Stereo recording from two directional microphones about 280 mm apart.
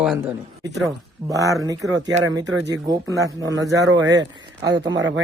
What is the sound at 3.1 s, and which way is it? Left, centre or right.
A man's voice, centre.